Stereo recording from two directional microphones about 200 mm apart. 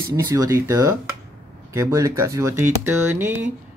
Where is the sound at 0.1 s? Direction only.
15° right (ahead or behind).